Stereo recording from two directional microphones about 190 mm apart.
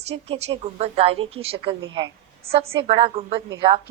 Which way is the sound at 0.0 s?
35° right (ahead or behind).